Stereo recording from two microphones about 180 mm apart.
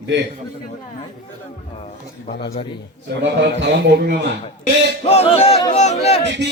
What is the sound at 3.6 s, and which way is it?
Speech, 65° right (ahead or behind).